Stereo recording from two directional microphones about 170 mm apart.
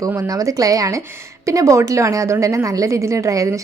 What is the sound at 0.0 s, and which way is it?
A woman's voice, 20° right (ahead or behind).